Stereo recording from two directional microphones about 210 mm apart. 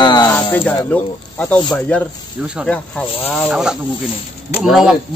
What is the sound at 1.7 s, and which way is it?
Speech, 5° left (ahead or behind).